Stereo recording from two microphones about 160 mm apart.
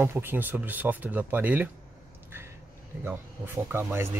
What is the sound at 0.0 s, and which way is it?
Speech, 15° right (ahead or behind).